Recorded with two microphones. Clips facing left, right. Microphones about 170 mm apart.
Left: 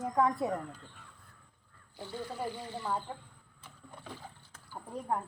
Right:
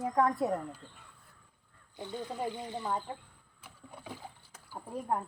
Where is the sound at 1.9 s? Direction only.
20° right (ahead or behind).